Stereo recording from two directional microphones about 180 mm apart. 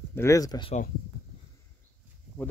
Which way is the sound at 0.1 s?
15° left (ahead or behind).